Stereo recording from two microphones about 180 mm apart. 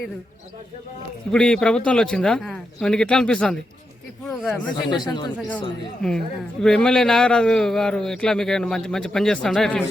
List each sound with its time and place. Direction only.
1.3 s a man's voice: 5° left (ahead or behind)
4.9 s speech: 25° left (ahead or behind)
5.4 s a man's voice: 5° left (ahead or behind)